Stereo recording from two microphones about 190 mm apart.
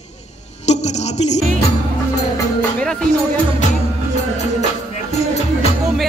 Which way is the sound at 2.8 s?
5° left (ahead or behind).